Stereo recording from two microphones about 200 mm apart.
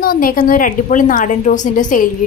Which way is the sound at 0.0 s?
45° left (ahead or behind).